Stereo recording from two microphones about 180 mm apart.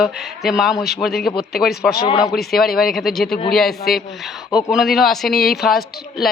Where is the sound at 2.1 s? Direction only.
20° left (ahead or behind).